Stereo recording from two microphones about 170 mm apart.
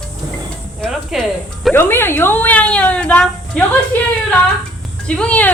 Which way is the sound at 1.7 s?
15° left (ahead or behind).